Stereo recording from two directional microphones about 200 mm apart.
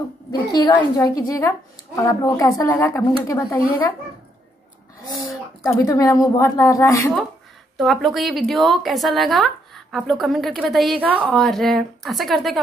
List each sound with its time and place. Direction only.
0.3 s a woman's voice: 20° left (ahead or behind)
5.8 s a woman's voice: 15° left (ahead or behind)
7.7 s a woman's voice: centre (ahead or behind)